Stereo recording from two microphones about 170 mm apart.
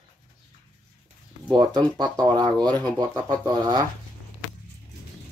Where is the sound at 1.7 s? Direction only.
25° right (ahead or behind).